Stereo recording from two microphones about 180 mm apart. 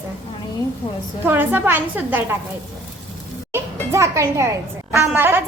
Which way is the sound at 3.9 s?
15° right (ahead or behind).